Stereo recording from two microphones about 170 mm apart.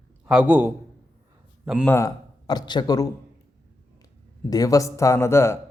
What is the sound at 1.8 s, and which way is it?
Speech, 15° left (ahead or behind).